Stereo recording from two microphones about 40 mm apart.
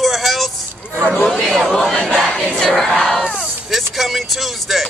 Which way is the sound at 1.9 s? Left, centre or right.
Centre.